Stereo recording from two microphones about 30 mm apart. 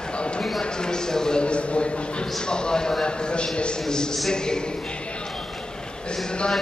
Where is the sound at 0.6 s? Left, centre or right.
Left.